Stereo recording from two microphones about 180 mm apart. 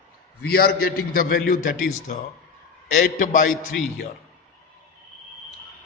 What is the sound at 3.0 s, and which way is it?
Speech, 50° left (ahead or behind).